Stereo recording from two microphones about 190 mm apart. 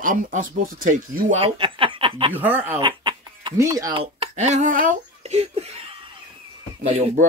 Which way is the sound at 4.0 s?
35° right (ahead or behind).